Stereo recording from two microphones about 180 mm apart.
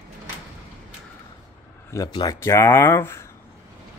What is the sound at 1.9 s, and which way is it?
Speech, 20° left (ahead or behind).